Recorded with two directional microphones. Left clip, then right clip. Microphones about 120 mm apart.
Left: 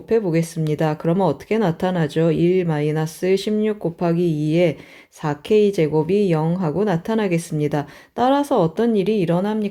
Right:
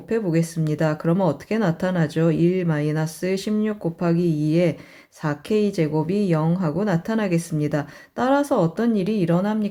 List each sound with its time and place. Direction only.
0.1 s speech: 30° left (ahead or behind)